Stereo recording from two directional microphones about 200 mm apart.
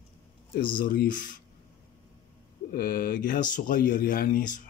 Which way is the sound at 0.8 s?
45° left (ahead or behind).